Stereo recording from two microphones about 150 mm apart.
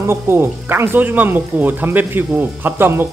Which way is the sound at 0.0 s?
15° right (ahead or behind).